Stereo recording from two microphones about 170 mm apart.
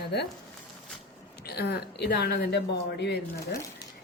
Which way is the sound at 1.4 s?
70° left (ahead or behind).